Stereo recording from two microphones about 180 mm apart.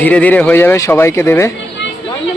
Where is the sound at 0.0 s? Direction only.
10° left (ahead or behind).